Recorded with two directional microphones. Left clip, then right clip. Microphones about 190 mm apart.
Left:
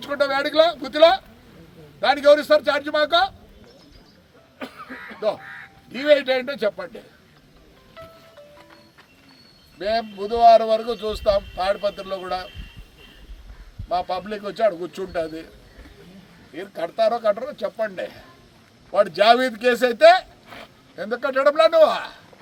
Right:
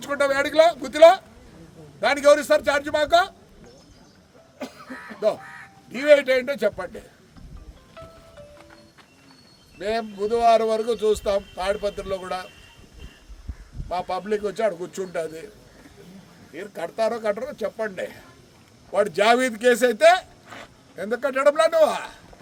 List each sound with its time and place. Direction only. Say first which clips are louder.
0.0 s speech: even; 25° right (ahead or behind)
5.9 s speech: right 1 dB; 25° right (ahead or behind)
9.7 s speech: left 3 dB; 25° right (ahead or behind)
13.9 s speech: left 1 dB; 25° right (ahead or behind)
16.6 s speech: left 3 dB; 20° right (ahead or behind)